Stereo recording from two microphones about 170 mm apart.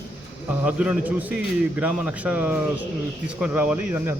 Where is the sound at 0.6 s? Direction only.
5° right (ahead or behind).